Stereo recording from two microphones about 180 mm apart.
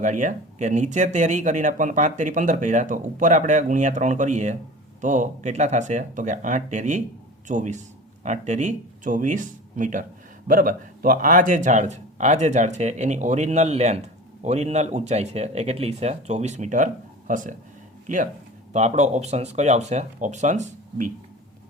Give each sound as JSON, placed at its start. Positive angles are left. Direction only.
{"t": 0.0, "sound": "speech", "side_deg": -45}